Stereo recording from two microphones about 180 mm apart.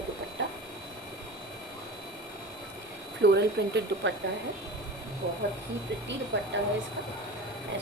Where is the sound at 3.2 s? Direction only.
70° right (ahead or behind).